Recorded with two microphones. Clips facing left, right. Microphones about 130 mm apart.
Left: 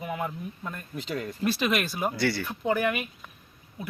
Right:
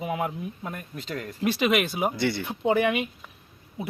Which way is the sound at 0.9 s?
10° left (ahead or behind).